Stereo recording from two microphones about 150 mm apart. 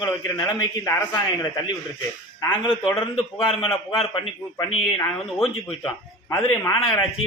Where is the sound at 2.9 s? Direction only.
35° left (ahead or behind).